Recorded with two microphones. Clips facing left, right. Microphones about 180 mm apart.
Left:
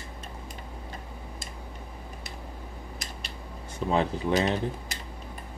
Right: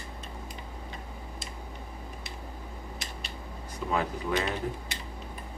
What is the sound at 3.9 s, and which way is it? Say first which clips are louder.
Speech: left 4 dB; 30° left (ahead or behind).